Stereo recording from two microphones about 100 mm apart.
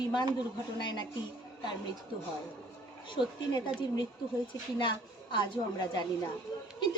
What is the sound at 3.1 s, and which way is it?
A woman's voice, 50° left (ahead or behind).